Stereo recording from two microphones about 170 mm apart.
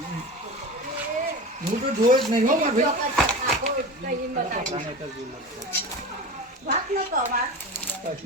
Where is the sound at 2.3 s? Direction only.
50° right (ahead or behind).